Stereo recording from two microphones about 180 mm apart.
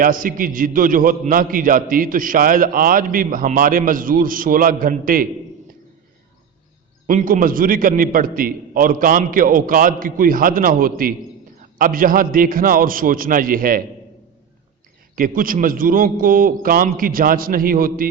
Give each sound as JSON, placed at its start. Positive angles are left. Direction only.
{"t": 0.0, "sound": "a man's voice", "side_deg": -50}
{"t": 7.1, "sound": "a man's voice", "side_deg": -45}
{"t": 15.1, "sound": "a man's voice", "side_deg": -50}